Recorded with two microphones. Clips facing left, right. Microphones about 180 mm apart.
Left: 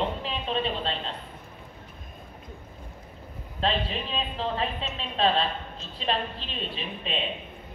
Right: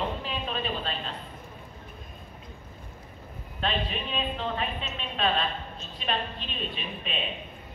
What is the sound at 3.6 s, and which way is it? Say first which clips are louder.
A man's voice: left 2 dB; 30° left (ahead or behind).